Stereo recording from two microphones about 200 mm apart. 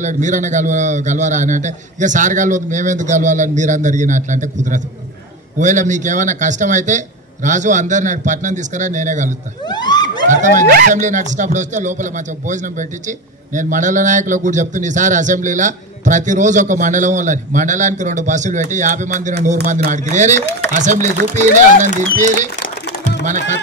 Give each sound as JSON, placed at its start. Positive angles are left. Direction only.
{"t": 0.0, "sound": "a man's voice", "side_deg": -40}
{"t": 9.7, "sound": "a sound", "side_deg": 20}
{"t": 10.3, "sound": "a man's voice", "side_deg": -40}
{"t": 22.2, "sound": "a man's voice", "side_deg": -40}